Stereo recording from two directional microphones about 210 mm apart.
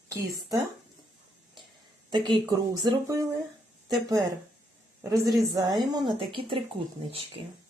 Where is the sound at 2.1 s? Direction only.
20° right (ahead or behind).